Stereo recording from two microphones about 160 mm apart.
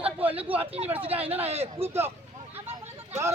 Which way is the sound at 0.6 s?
35° right (ahead or behind).